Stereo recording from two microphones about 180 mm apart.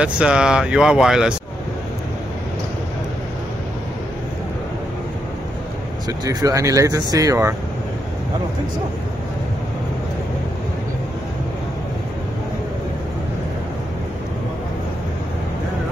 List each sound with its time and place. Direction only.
0.0 s speech: 5° right (ahead or behind)
6.0 s speech: 20° right (ahead or behind)